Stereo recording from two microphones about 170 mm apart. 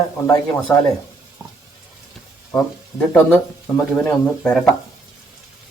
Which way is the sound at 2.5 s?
10° left (ahead or behind).